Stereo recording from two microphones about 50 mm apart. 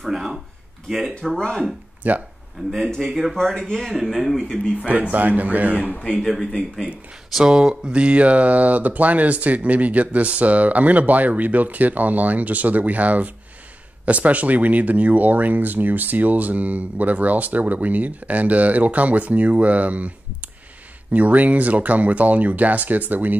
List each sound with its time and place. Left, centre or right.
0.0 s speech: centre
2.0 s speech: right
2.6 s speech: centre
3.3 s speech: centre
3.8 s speech: centre
4.8 s speech: right
5.9 s speech: left
6.1 s speech: centre
7.3 s speech: centre
21.1 s speech: right